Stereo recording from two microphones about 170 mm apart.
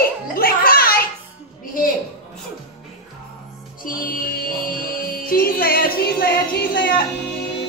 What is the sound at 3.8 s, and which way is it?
Music, 55° left (ahead or behind).